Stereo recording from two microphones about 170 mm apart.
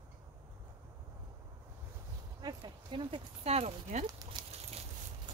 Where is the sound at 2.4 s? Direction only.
25° right (ahead or behind).